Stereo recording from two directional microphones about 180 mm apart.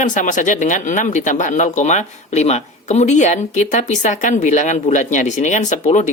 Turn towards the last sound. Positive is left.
turn(degrees=40)  # may be behind; listen again after turning